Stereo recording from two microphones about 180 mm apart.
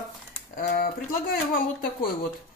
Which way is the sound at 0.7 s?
55° left (ahead or behind).